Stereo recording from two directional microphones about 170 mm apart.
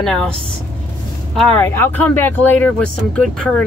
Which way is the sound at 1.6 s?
10° left (ahead or behind).